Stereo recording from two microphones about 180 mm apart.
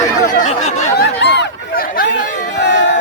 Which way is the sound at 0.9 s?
70° left (ahead or behind).